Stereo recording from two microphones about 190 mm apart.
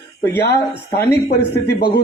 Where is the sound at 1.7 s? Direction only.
60° left (ahead or behind).